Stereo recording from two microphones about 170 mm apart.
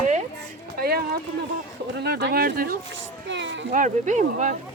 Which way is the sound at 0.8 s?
65° right (ahead or behind).